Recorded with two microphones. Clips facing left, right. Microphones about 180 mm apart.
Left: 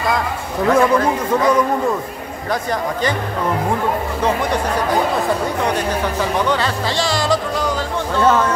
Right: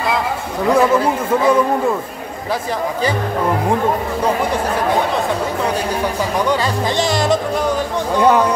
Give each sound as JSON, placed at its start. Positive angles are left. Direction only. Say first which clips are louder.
{"t": 0.7, "sound": "speech", "louder": "right 1 dB", "side_deg": -5}
{"t": 6.5, "sound": "speech", "louder": "right 2 dB", "side_deg": -15}